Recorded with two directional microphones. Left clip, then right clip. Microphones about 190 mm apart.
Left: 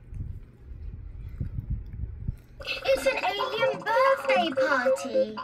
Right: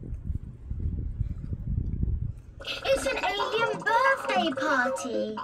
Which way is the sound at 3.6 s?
5° left (ahead or behind).